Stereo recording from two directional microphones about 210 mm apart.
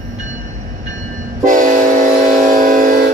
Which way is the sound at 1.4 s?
40° right (ahead or behind).